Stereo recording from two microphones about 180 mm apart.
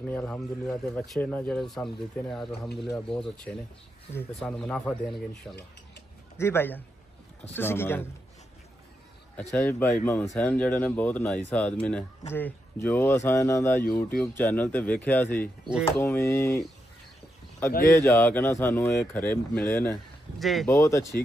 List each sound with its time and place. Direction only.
0.0 s a man's voice: 10° left (ahead or behind)
6.3 s a man's voice: 15° left (ahead or behind)
9.5 s speech: 10° left (ahead or behind)
17.9 s speech: 10° left (ahead or behind)
20.3 s a man's voice: centre (ahead or behind)
20.6 s speech: 15° left (ahead or behind)